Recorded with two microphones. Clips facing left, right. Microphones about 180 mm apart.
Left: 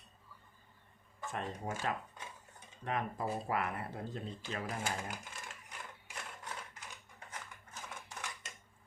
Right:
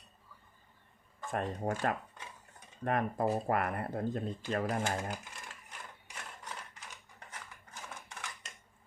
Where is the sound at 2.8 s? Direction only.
50° right (ahead or behind).